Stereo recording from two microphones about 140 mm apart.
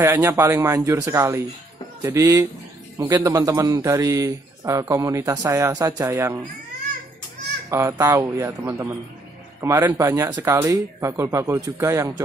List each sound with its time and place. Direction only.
0.0 s speech: 20° right (ahead or behind)
7.7 s speech: 20° right (ahead or behind)
9.6 s speech: 20° right (ahead or behind)